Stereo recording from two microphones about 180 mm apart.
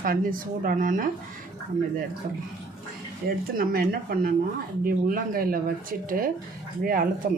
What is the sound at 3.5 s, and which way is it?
Speech, 55° right (ahead or behind).